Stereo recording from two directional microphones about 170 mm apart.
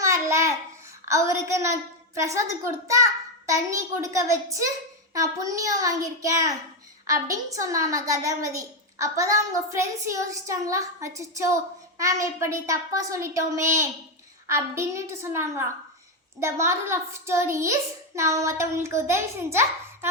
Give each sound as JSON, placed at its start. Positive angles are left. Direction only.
{"t": 0.0, "sound": "babbling", "side_deg": -15}
{"t": 1.0, "sound": "a child's voice", "side_deg": -15}